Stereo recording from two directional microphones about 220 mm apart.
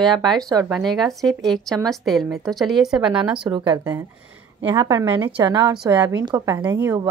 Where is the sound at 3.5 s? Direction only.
20° right (ahead or behind).